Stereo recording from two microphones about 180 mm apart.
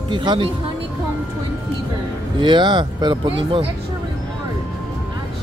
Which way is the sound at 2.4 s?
25° right (ahead or behind).